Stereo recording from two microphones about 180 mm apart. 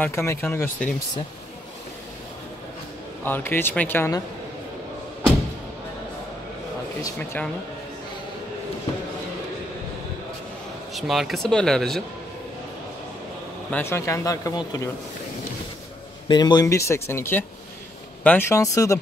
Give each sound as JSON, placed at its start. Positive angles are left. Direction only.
{"t": 0.0, "sound": "speech", "side_deg": 15}
{"t": 3.3, "sound": "speech", "side_deg": 10}
{"t": 7.0, "sound": "speech", "side_deg": 10}
{"t": 10.9, "sound": "speech", "side_deg": 0}
{"t": 13.7, "sound": "speech", "side_deg": 10}
{"t": 16.3, "sound": "speech", "side_deg": 25}